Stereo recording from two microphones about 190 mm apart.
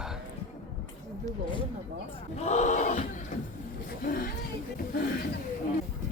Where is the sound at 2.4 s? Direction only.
35° left (ahead or behind).